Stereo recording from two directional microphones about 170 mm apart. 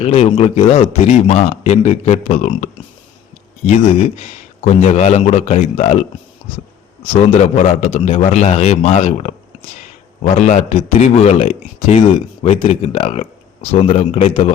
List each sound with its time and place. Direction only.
0.0 s a man's voice: 40° left (ahead or behind)
3.7 s a man's voice: 40° left (ahead or behind)
7.2 s a man's voice: 40° left (ahead or behind)
7.9 s a man's voice: 35° left (ahead or behind)
11.9 s a man's voice: 30° left (ahead or behind)